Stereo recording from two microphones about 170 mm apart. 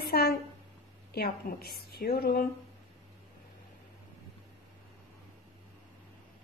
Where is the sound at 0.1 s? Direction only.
65° left (ahead or behind).